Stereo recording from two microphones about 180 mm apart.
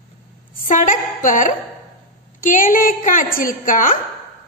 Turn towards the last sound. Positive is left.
turn(degrees=50)  # may be behind; listen again after turning